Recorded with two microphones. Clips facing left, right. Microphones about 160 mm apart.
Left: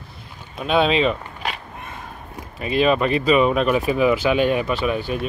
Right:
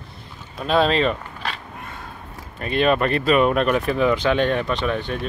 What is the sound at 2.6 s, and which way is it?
Speech, 5° left (ahead or behind).